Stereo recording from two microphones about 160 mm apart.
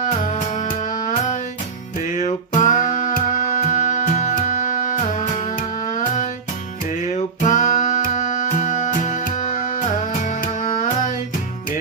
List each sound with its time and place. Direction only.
0.1 s music: 50° left (ahead or behind)